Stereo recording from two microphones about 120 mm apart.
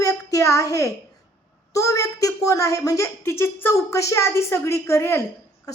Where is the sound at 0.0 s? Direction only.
25° left (ahead or behind).